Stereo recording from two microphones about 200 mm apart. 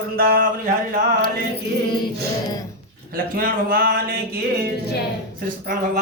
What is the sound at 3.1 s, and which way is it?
Speech, 45° right (ahead or behind).